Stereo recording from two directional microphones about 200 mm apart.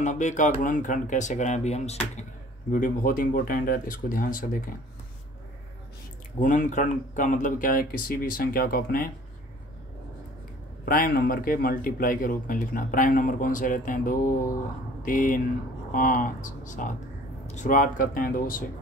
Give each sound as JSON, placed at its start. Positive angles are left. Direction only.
{"t": 0.0, "sound": "speech", "side_deg": 35}
{"t": 6.4, "sound": "speech", "side_deg": 40}
{"t": 10.9, "sound": "speech", "side_deg": 45}